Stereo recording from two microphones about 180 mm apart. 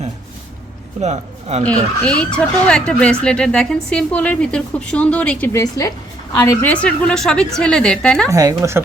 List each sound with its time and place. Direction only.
1.0 s speech: 40° right (ahead or behind)
1.6 s speech: 5° left (ahead or behind)
5.5 s a woman's voice: 20° left (ahead or behind)
8.3 s speech: 15° right (ahead or behind)